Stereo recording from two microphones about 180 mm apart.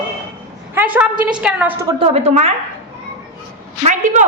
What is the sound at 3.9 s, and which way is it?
Speech, 45° right (ahead or behind).